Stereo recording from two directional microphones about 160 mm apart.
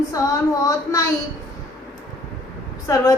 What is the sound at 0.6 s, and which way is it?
Speech, 20° left (ahead or behind).